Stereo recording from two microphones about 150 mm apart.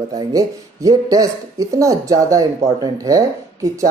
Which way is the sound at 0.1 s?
25° right (ahead or behind).